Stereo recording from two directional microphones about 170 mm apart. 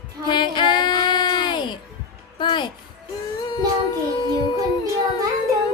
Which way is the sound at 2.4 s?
30° left (ahead or behind).